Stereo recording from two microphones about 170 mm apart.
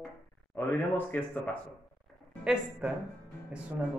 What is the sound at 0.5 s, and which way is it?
Speech, 10° left (ahead or behind).